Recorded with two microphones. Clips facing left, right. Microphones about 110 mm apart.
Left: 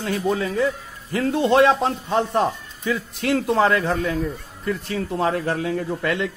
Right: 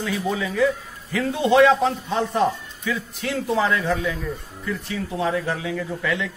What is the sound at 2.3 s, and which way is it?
A man's voice, 60° left (ahead or behind).